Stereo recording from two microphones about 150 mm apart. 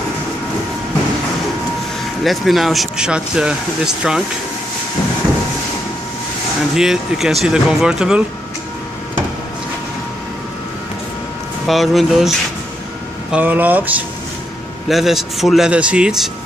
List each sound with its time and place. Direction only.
2.2 s speech: centre (ahead or behind)
6.7 s speech: 5° right (ahead or behind)
11.6 s speech: centre (ahead or behind)
13.3 s speech: 10° right (ahead or behind)